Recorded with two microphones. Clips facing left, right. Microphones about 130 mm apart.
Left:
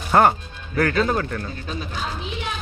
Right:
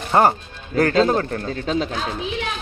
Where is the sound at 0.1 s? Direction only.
20° right (ahead or behind).